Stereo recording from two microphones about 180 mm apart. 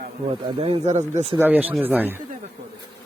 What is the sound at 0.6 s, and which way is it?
Speech, 35° right (ahead or behind).